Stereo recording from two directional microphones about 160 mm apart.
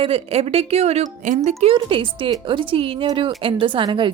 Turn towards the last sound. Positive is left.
turn(degrees=-30)  # may be behind; listen again after turning